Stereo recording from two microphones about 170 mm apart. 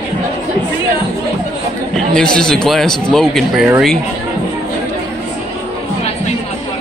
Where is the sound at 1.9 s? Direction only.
5° left (ahead or behind).